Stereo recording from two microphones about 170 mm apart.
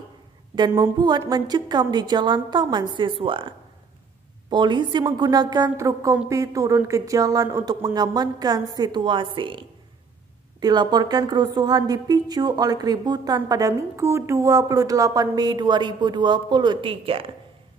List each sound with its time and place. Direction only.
0.7 s a woman's voice: 20° right (ahead or behind)